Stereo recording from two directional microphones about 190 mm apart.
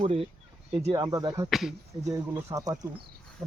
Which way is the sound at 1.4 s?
Centre (ahead or behind).